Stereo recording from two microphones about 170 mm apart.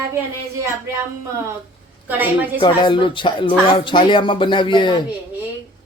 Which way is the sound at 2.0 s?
10° right (ahead or behind).